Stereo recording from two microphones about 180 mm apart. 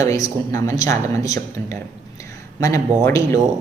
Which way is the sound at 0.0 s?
15° left (ahead or behind).